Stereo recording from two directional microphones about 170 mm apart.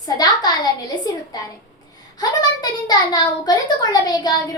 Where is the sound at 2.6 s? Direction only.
25° left (ahead or behind).